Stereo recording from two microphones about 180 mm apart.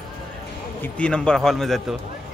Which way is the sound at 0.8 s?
5° left (ahead or behind).